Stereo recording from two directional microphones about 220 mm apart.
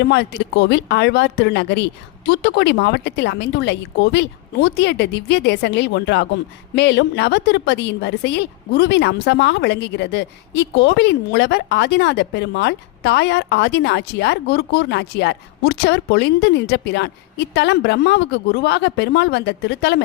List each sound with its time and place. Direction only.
0.0 s a woman's voice: 50° left (ahead or behind)